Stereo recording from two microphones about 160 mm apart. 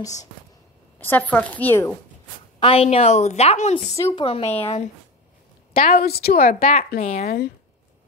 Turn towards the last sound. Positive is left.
turn(degrees=80)